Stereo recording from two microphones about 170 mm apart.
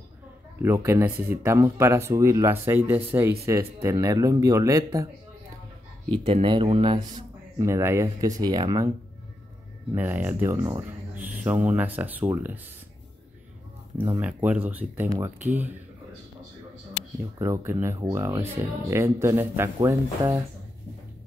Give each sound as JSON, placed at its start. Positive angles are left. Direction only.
{"t": 0.6, "sound": "speech", "side_deg": -15}
{"t": 6.2, "sound": "speech", "side_deg": -30}
{"t": 7.5, "sound": "speech", "side_deg": -15}
{"t": 9.9, "sound": "speech", "side_deg": -10}
{"t": 11.1, "sound": "speech", "side_deg": -10}
{"t": 13.9, "sound": "speech", "side_deg": -20}
{"t": 14.2, "sound": "speech", "side_deg": -10}
{"t": 17.4, "sound": "speech", "side_deg": -15}